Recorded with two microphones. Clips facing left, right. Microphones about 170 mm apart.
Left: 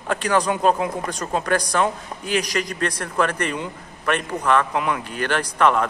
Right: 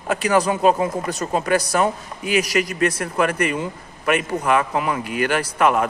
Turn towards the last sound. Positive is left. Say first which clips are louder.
# right 1 dB
turn(degrees=-10)  # may be behind; listen again after turning